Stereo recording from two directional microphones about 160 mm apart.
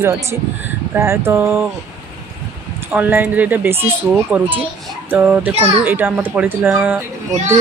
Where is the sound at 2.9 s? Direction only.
10° right (ahead or behind).